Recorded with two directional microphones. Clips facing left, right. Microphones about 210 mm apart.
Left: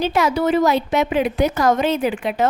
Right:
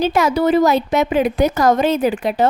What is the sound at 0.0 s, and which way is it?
A woman's voice, 40° right (ahead or behind).